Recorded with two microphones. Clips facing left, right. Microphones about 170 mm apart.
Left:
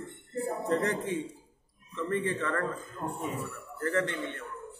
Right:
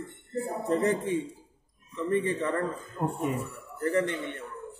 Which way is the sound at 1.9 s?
15° right (ahead or behind).